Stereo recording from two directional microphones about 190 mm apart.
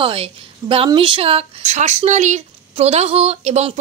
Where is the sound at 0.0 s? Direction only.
30° right (ahead or behind).